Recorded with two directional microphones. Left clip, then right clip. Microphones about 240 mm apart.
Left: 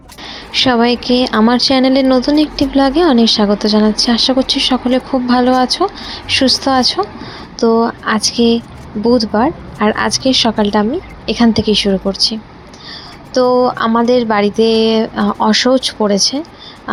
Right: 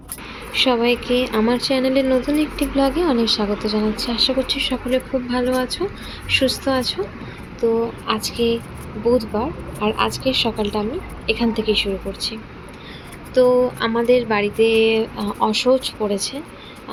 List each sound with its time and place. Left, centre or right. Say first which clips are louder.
0.6 s speech: left 5 dB; left
15.4 s speech: left 4 dB; left